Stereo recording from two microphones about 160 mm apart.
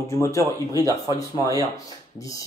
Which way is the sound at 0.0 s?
20° left (ahead or behind).